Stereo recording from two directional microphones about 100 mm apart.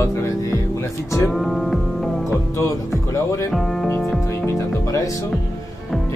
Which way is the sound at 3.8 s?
25° left (ahead or behind).